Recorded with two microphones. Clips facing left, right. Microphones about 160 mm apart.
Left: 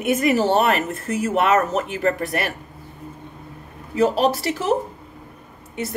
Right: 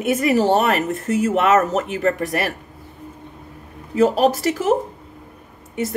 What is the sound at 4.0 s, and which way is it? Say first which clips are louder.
Speech: right 2 dB; 45° right (ahead or behind).